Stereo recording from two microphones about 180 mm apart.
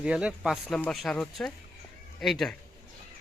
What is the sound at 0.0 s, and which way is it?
Speech, 5° right (ahead or behind).